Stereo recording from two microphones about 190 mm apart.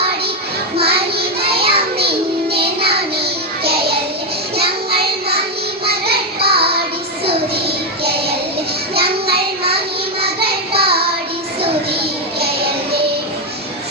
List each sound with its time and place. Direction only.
0.8 s child singing: 55° right (ahead or behind)
3.6 s music: 55° right (ahead or behind)
5.8 s child singing: 55° right (ahead or behind)
8.0 s child singing: 55° right (ahead or behind)
12.4 s music: 55° right (ahead or behind)